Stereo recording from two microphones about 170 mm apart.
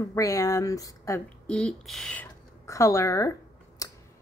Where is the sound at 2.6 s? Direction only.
20° left (ahead or behind).